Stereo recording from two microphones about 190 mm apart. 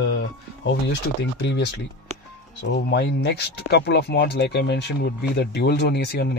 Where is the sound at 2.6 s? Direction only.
65° left (ahead or behind).